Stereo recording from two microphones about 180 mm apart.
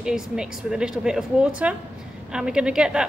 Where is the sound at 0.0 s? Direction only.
5° right (ahead or behind).